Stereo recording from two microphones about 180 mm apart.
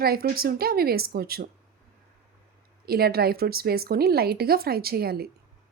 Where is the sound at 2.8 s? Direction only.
60° right (ahead or behind).